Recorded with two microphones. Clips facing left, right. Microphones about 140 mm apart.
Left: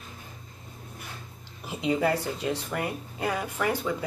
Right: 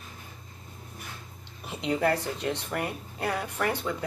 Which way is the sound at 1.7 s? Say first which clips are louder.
Left 1 dB; 5° left (ahead or behind).